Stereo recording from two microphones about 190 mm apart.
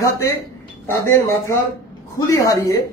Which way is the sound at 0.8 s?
15° left (ahead or behind).